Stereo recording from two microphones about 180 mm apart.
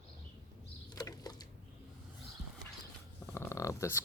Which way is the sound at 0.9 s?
20° left (ahead or behind).